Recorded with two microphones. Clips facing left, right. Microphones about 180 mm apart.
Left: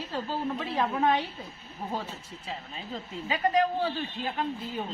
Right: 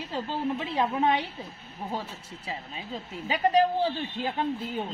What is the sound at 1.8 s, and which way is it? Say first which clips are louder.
Speech: even; centre (ahead or behind).